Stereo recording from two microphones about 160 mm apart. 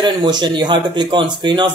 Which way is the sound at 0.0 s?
25° right (ahead or behind).